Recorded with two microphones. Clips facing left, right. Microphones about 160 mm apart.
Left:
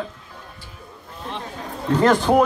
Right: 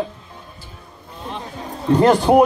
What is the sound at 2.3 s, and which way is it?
Speech, 15° right (ahead or behind).